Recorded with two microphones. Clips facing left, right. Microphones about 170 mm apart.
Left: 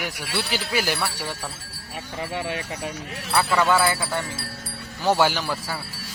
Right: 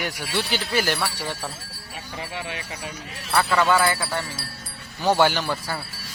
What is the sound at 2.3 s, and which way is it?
Speech, 45° left (ahead or behind).